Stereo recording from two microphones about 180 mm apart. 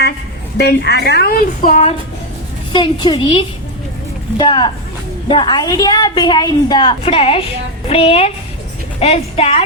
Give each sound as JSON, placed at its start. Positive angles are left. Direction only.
{"t": 0.5, "sound": "a woman's voice", "side_deg": 65}
{"t": 2.7, "sound": "a woman's voice", "side_deg": 25}